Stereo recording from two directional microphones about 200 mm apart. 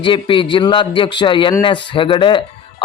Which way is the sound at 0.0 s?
25° left (ahead or behind).